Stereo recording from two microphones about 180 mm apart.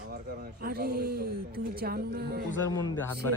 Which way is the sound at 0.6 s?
55° right (ahead or behind).